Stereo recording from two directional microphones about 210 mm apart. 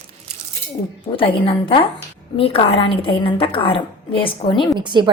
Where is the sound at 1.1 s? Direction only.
25° left (ahead or behind).